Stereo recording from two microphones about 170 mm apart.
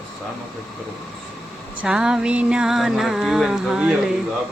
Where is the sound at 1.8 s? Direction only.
5° right (ahead or behind).